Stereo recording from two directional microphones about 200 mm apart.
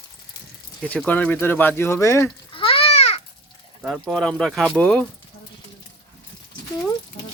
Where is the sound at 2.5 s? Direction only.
25° left (ahead or behind).